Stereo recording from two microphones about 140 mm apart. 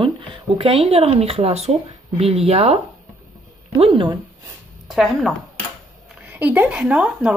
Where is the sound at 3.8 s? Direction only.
40° right (ahead or behind).